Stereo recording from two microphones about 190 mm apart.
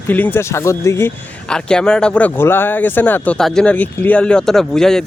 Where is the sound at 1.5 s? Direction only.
5° left (ahead or behind).